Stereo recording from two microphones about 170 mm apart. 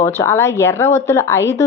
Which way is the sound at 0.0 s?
15° left (ahead or behind).